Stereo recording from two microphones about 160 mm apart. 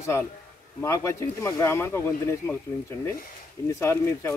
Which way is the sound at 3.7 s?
15° left (ahead or behind).